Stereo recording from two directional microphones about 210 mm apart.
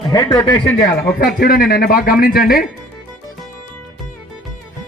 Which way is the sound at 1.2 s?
40° left (ahead or behind).